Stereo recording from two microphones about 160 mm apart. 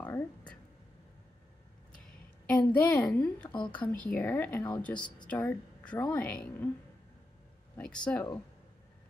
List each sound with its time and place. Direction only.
0.0 s speech: 10° left (ahead or behind)
2.4 s a woman's voice: 10° left (ahead or behind)
3.4 s speech: 30° left (ahead or behind)
3.7 s a woman's voice: 10° left (ahead or behind)
7.7 s speech: 5° left (ahead or behind)